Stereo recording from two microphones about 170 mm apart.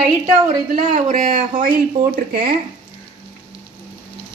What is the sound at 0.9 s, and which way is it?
A woman's voice, 45° right (ahead or behind).